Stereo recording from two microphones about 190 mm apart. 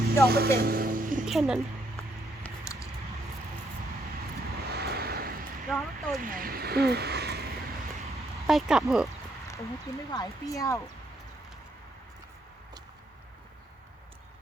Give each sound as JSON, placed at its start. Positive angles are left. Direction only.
{"t": 0.3, "sound": "vehicle", "side_deg": -55}
{"t": 1.2, "sound": "speech", "side_deg": 0}
{"t": 2.4, "sound": "a sound", "side_deg": 15}
{"t": 4.4, "sound": "vehicle", "side_deg": -55}
{"t": 5.6, "sound": "speech", "side_deg": 0}
{"t": 6.2, "sound": "speech", "side_deg": -50}
{"t": 8.4, "sound": "speech", "side_deg": 0}
{"t": 10.1, "sound": "speech", "side_deg": 20}